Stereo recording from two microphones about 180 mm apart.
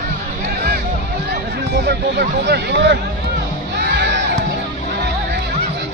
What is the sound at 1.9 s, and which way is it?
Speech, 65° right (ahead or behind).